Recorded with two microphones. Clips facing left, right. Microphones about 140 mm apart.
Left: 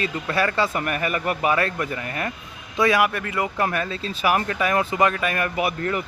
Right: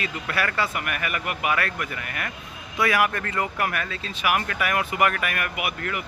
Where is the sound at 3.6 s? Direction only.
25° left (ahead or behind).